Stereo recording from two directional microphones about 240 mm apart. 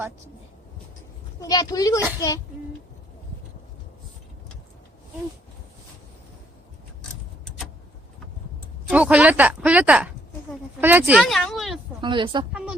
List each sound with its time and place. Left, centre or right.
1.4 s a woman's voice: centre
8.9 s speech: centre
11.9 s speech: centre